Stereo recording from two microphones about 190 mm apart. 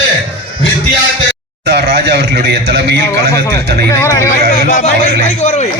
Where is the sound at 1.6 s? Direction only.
60° right (ahead or behind).